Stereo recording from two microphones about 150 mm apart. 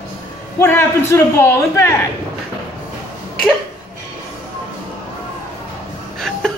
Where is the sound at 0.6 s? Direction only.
15° left (ahead or behind).